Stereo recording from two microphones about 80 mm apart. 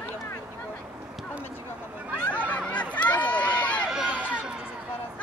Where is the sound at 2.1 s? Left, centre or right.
Left.